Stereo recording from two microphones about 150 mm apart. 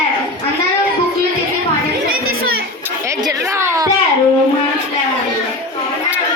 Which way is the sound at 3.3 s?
20° right (ahead or behind).